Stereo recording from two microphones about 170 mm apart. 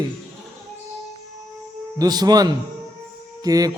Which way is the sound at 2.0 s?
20° right (ahead or behind).